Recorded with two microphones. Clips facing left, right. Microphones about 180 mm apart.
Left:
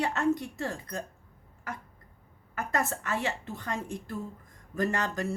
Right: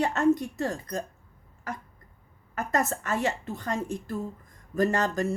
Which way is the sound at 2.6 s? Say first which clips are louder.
Right 3 dB; 40° right (ahead or behind).